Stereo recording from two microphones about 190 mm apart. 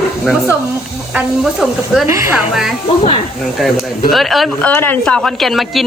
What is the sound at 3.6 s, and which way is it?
Speech, centre (ahead or behind).